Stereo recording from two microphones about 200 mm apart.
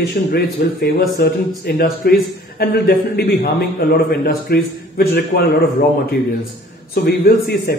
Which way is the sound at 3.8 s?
50° left (ahead or behind).